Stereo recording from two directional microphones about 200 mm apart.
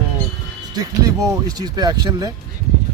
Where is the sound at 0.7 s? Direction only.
20° right (ahead or behind).